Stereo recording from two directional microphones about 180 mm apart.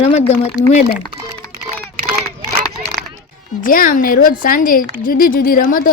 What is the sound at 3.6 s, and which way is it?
A woman's voice, 50° left (ahead or behind).